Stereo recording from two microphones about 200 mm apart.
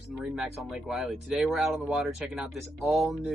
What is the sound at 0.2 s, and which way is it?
Speech, 5° right (ahead or behind).